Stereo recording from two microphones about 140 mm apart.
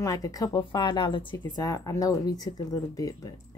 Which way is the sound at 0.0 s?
25° left (ahead or behind).